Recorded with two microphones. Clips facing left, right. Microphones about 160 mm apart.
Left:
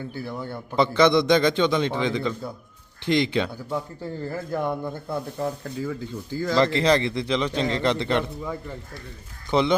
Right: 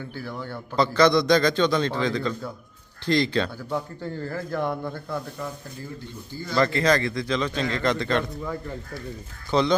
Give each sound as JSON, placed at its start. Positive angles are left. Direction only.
{"t": 0.3, "sound": "a man's voice", "side_deg": 15}
{"t": 5.0, "sound": "speech", "side_deg": 35}
{"t": 5.6, "sound": "speech", "side_deg": 90}
{"t": 6.6, "sound": "a man's voice", "side_deg": 25}
{"t": 9.5, "sound": "a man's voice", "side_deg": 20}